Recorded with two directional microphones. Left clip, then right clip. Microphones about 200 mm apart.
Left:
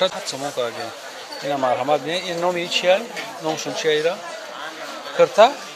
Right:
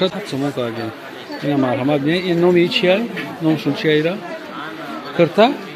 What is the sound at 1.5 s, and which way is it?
Speech, 10° left (ahead or behind).